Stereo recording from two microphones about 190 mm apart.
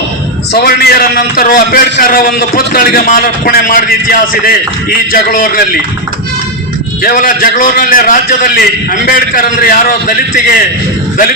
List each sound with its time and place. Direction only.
0.5 s a man's voice: 60° left (ahead or behind)
7.0 s a man's voice: 45° left (ahead or behind)